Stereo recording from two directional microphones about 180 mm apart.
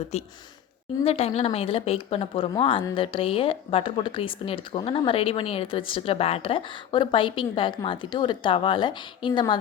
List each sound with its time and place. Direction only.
1.0 s speech: 35° left (ahead or behind)